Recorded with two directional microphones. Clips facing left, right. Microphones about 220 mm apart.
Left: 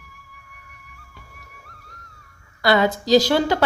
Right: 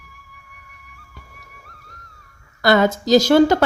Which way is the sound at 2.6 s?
45° right (ahead or behind).